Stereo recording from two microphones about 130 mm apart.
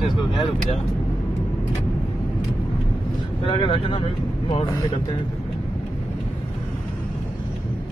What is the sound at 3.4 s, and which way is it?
Speech, 45° left (ahead or behind).